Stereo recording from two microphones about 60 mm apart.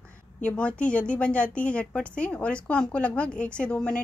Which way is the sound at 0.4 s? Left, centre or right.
Centre.